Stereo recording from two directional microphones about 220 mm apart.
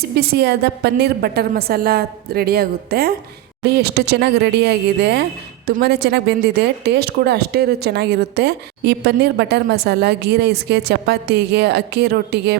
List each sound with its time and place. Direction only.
0.2 s a woman's voice: 50° right (ahead or behind)